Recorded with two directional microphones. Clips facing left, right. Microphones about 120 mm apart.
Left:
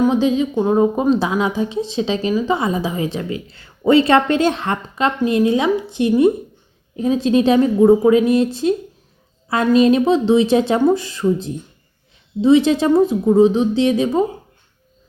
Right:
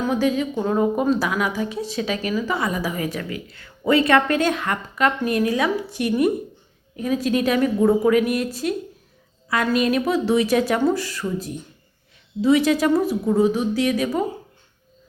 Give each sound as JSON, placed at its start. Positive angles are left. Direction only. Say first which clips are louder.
{"t": 0.0, "sound": "speech", "louder": "left 5 dB", "side_deg": 20}